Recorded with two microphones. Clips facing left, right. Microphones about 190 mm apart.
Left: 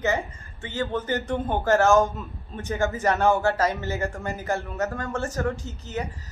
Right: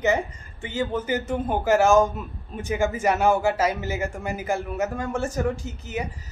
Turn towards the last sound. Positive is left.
turn(degrees=-15)  # may be behind; listen again after turning